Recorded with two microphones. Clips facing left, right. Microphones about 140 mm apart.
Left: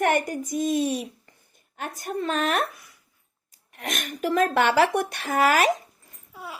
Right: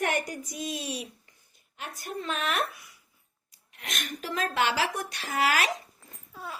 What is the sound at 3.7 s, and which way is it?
A woman's voice, 50° left (ahead or behind).